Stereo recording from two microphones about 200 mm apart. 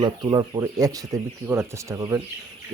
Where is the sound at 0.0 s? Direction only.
20° right (ahead or behind).